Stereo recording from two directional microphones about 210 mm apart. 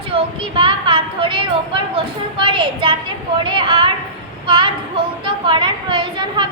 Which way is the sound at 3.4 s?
25° right (ahead or behind).